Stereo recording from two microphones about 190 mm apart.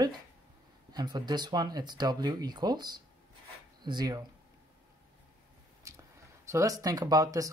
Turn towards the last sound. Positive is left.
turn(degrees=-20)  # may be behind; listen again after turning